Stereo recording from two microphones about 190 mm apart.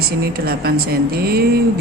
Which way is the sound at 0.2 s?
55° right (ahead or behind).